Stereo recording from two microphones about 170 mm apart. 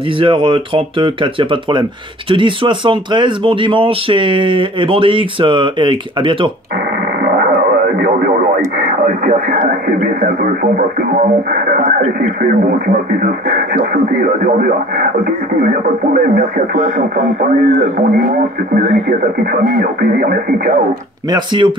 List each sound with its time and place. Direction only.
0.2 s speech: 30° right (ahead or behind)
7.3 s radio: 65° right (ahead or behind)
8.7 s speech: 50° right (ahead or behind)
18.1 s speech: 55° right (ahead or behind)
21.3 s speech: 25° right (ahead or behind)